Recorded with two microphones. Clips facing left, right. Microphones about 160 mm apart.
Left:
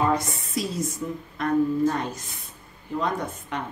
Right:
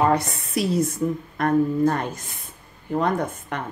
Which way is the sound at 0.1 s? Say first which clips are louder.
Right 3 dB; 65° right (ahead or behind).